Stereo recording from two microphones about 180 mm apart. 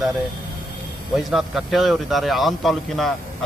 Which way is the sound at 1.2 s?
Centre (ahead or behind).